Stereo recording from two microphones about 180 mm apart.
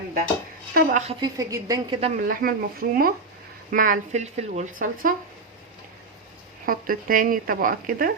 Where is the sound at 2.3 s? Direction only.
55° right (ahead or behind).